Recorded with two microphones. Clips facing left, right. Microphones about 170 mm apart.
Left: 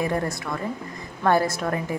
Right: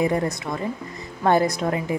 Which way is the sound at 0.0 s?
15° right (ahead or behind).